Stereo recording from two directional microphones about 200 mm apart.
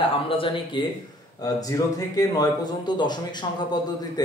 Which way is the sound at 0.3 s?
25° left (ahead or behind).